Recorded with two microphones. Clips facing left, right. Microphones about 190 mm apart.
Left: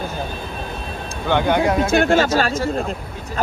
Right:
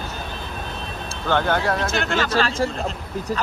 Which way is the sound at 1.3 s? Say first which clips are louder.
Left 3 dB; 15° left (ahead or behind).